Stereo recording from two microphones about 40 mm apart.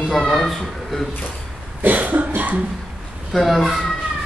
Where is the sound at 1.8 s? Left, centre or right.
Right.